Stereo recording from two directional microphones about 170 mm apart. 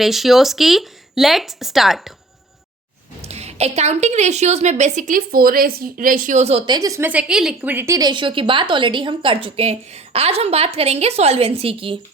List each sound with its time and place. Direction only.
0.0 s speech: centre (ahead or behind)
3.2 s a woman's voice: 40° right (ahead or behind)
6.7 s a woman's voice: 20° right (ahead or behind)